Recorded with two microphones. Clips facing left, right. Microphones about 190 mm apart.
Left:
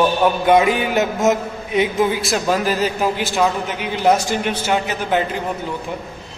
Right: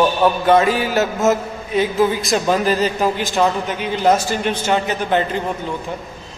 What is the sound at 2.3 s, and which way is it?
A man's voice, 5° left (ahead or behind).